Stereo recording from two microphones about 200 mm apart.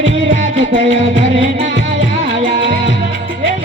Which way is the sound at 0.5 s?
30° right (ahead or behind).